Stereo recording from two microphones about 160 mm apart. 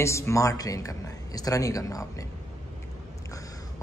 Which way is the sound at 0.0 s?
20° left (ahead or behind).